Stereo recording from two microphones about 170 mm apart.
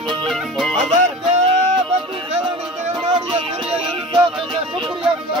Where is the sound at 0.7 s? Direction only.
45° right (ahead or behind).